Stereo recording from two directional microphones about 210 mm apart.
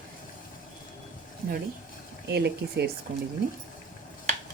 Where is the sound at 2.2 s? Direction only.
50° right (ahead or behind).